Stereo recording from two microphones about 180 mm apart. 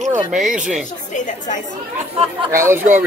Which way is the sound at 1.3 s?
45° left (ahead or behind).